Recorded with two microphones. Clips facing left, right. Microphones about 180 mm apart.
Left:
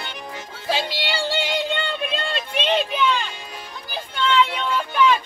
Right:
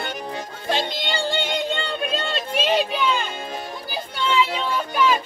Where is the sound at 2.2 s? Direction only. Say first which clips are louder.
Even; 5° right (ahead or behind).